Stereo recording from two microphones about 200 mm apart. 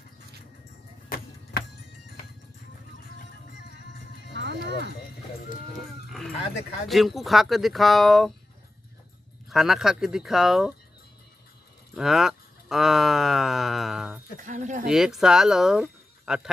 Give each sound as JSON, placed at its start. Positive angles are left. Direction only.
{"t": 1.0, "sound": "a sound", "side_deg": 45}
{"t": 3.5, "sound": "music", "side_deg": 50}
{"t": 4.3, "sound": "music", "side_deg": -60}
{"t": 6.1, "sound": "speech", "side_deg": 0}
{"t": 9.5, "sound": "speech", "side_deg": 0}
{"t": 11.9, "sound": "speech", "side_deg": 0}
{"t": 14.4, "sound": "speech", "side_deg": -40}
{"t": 14.9, "sound": "speech", "side_deg": 0}